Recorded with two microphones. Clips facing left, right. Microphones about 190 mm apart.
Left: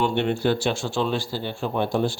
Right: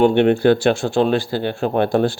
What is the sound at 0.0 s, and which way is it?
Speech, 60° right (ahead or behind).